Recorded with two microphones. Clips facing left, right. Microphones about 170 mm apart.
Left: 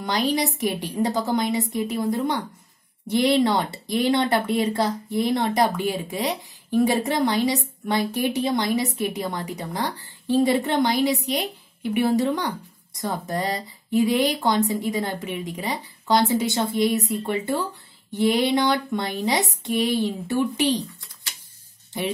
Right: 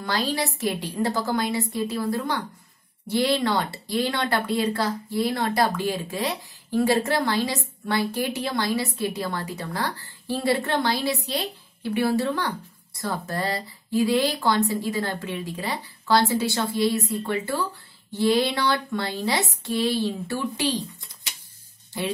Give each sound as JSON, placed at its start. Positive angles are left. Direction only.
{"t": 0.0, "sound": "speech", "side_deg": 20}